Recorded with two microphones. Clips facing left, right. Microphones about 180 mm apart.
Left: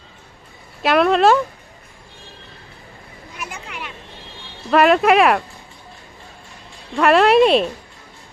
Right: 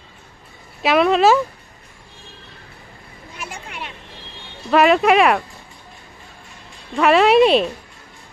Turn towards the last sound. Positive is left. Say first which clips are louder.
# even
turn(degrees=0)  # may be behind; listen again after turning